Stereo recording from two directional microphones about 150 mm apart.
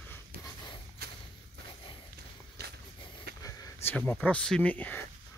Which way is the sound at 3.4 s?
20° left (ahead or behind).